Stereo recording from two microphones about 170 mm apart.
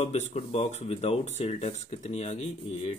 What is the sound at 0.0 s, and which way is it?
Speech, 40° left (ahead or behind).